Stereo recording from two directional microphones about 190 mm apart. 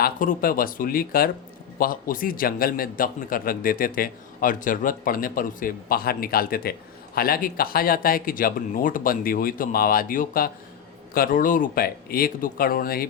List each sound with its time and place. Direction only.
0.0 s a man's voice: 45° left (ahead or behind)